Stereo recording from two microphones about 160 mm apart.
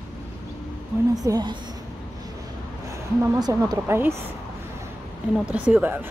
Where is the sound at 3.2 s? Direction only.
20° right (ahead or behind).